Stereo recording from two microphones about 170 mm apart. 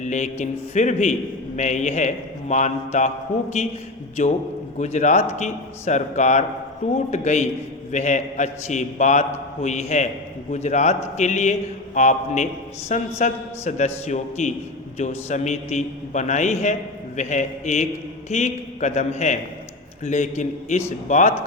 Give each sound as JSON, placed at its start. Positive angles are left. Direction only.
{"t": 0.0, "sound": "a man's voice", "side_deg": 45}
{"t": 4.2, "sound": "a man's voice", "side_deg": 40}
{"t": 14.9, "sound": "a man's voice", "side_deg": 45}